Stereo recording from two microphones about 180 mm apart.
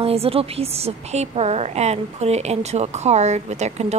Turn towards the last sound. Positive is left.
turn(degrees=-40)  # may be behind; listen again after turning